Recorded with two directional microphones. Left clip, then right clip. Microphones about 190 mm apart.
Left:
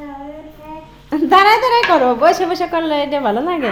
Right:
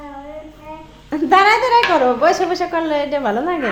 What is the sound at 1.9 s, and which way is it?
Speech, 15° left (ahead or behind).